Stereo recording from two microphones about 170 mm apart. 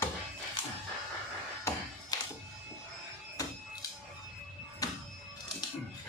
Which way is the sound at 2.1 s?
20° left (ahead or behind).